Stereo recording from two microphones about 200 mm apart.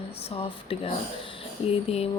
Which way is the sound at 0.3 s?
30° left (ahead or behind).